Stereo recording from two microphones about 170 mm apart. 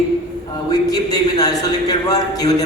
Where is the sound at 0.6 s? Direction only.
20° left (ahead or behind).